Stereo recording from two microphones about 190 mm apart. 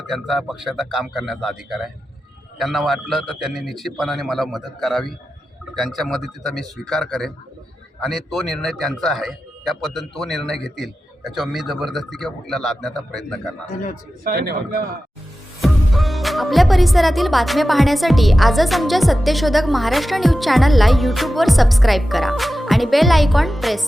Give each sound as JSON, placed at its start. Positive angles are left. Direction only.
{"t": 0.1, "sound": "speech", "side_deg": 0}
{"t": 14.3, "sound": "a man's voice", "side_deg": -55}
{"t": 15.6, "sound": "speech", "side_deg": 0}